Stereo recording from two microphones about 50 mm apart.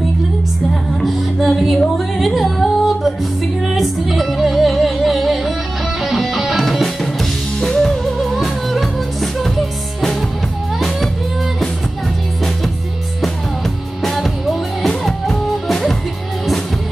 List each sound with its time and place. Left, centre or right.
1.0 s music: centre
6.6 s music: centre
14.1 s music: centre